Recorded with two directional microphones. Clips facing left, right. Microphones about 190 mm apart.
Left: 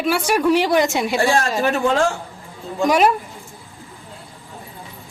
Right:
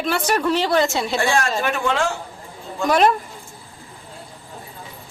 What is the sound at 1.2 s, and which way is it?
Speech, 35° left (ahead or behind).